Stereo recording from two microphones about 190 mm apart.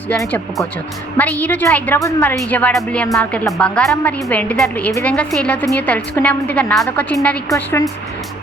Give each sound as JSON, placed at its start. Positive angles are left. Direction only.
{"t": 0.1, "sound": "a woman's voice", "side_deg": 10}